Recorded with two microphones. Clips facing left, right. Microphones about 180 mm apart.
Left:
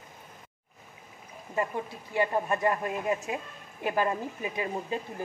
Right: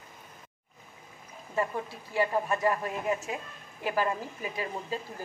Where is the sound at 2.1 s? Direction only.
20° left (ahead or behind).